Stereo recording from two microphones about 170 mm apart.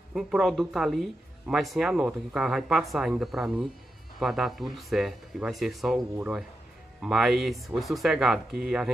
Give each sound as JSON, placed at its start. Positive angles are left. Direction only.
{"t": 0.1, "sound": "speech", "side_deg": 0}
{"t": 7.0, "sound": "speech", "side_deg": 0}